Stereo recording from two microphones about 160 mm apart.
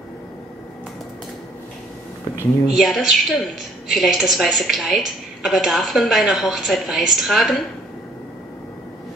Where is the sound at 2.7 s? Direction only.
Centre (ahead or behind).